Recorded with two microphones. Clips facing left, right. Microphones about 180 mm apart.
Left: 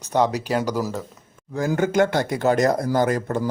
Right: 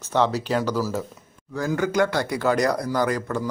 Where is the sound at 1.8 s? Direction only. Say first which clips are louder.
Left 3 dB; 25° left (ahead or behind).